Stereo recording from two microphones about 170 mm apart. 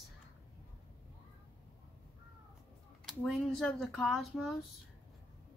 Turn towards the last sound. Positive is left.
turn(degrees=0)  # may be behind; listen again after turning